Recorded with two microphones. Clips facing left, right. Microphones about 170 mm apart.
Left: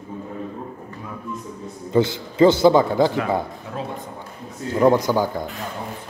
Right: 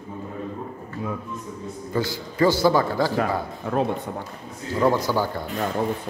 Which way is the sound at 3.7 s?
55° right (ahead or behind).